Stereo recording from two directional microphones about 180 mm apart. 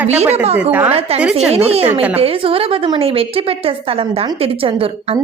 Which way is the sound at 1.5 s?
35° right (ahead or behind).